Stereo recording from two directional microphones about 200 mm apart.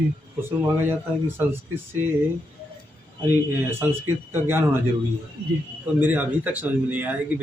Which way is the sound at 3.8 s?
10° right (ahead or behind).